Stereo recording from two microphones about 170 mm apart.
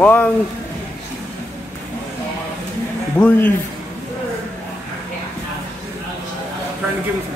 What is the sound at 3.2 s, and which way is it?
Speech, 10° left (ahead or behind).